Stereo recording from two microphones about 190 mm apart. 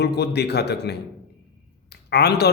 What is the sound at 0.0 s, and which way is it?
Speech, 60° left (ahead or behind).